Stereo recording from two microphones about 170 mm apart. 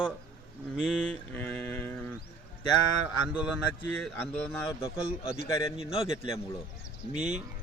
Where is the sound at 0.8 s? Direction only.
Centre (ahead or behind).